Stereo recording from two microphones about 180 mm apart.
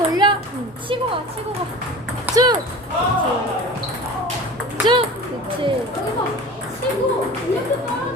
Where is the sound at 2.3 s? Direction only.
10° right (ahead or behind).